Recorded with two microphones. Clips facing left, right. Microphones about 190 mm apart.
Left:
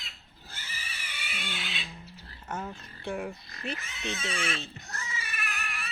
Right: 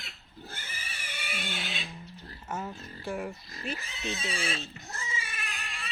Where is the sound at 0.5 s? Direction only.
50° right (ahead or behind).